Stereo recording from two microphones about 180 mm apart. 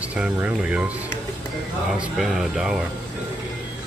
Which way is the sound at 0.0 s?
5° right (ahead or behind).